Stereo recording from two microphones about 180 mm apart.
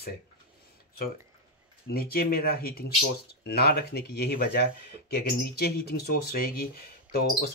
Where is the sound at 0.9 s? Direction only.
50° left (ahead or behind).